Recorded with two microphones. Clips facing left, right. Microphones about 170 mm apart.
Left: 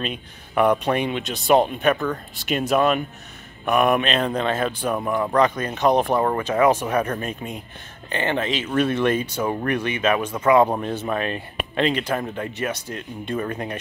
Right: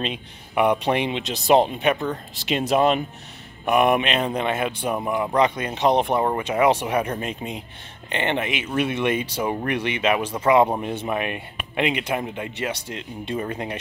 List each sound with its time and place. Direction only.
0.8 s a man's voice: 25° right (ahead or behind)
10.7 s a man's voice: 15° right (ahead or behind)